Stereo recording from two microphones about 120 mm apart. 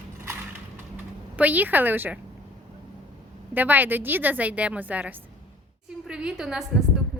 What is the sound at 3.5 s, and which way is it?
A woman's voice, 15° right (ahead or behind).